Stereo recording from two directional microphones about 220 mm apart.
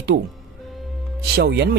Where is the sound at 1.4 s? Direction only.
50° right (ahead or behind).